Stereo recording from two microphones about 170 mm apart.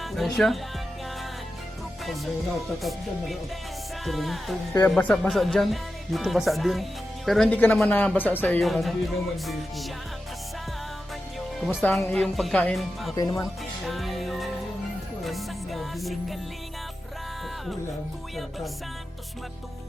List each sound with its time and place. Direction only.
0.0 s speech: centre (ahead or behind)
4.0 s speech: centre (ahead or behind)
4.7 s speech: 10° left (ahead or behind)
11.8 s speech: 10° left (ahead or behind)
13.1 s speech: 20° left (ahead or behind)
13.4 s music: centre (ahead or behind)